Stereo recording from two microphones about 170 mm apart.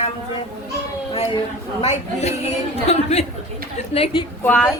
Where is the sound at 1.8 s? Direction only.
40° left (ahead or behind).